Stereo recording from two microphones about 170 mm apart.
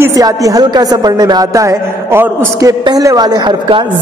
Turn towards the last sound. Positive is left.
turn(degrees=-30)  # may be behind; listen again after turning